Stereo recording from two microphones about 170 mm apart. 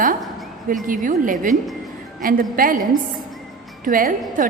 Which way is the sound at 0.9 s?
50° right (ahead or behind).